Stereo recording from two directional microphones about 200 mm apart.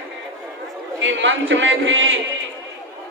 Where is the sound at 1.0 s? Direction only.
70° right (ahead or behind).